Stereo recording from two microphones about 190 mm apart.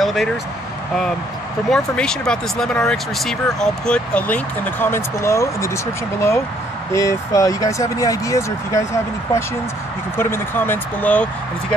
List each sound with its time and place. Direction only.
0.0 s speech: centre (ahead or behind)
1.7 s speech: 5° left (ahead or behind)
6.9 s speech: 15° left (ahead or behind)